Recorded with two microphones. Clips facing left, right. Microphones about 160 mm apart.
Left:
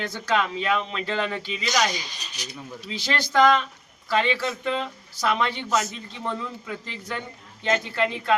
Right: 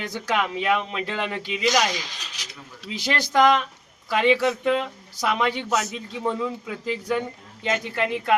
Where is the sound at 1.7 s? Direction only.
90° right.